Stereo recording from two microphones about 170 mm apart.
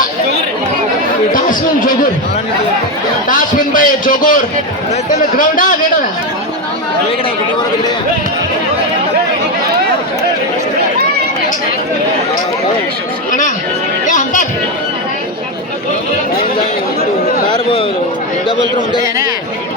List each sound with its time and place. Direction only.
1.3 s a man's voice: 55° left (ahead or behind)
3.2 s a man's voice: 50° left (ahead or behind)
14.1 s chatter: 50° left (ahead or behind)